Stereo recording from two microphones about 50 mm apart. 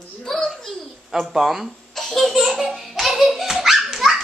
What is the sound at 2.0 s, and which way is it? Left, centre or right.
Laughter, centre.